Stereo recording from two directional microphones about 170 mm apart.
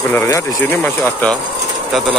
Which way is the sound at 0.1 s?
15° left (ahead or behind).